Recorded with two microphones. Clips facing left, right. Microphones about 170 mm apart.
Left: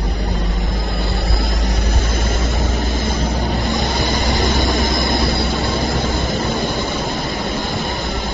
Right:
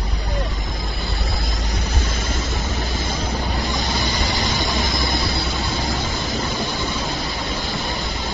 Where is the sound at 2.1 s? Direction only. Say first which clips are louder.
Left 5 dB; 55° left (ahead or behind).